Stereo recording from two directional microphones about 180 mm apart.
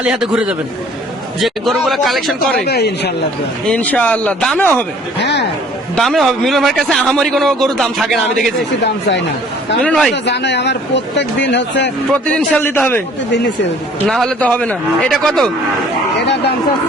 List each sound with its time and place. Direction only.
0.0 s a man's voice: 5° right (ahead or behind)
2.6 s speech: 65° left (ahead or behind)
3.7 s speech: 10° left (ahead or behind)
5.2 s speech: 70° left (ahead or behind)
6.0 s a man's voice: centre (ahead or behind)
8.8 s speech: 70° left (ahead or behind)
9.8 s a man's voice: 5° left (ahead or behind)
10.2 s speech: 70° left (ahead or behind)
12.1 s speech: 5° left (ahead or behind)
14.1 s a man's voice: 5° left (ahead or behind)
16.1 s speech: 75° left (ahead or behind)